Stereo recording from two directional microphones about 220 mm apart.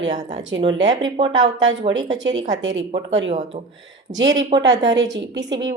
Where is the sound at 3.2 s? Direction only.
25° right (ahead or behind).